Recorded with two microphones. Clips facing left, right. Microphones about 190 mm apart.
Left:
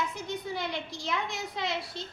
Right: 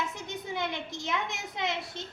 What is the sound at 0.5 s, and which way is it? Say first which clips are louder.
A woman's voice: right 1 dB; 20° right (ahead or behind).